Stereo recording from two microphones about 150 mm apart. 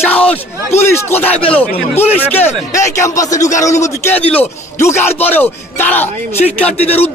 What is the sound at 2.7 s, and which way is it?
A man's voice, 20° left (ahead or behind).